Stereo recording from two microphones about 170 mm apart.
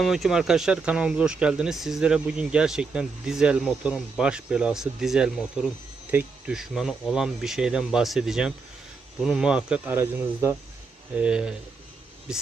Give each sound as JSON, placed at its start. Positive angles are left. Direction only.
{"t": 0.0, "sound": "speech", "side_deg": 0}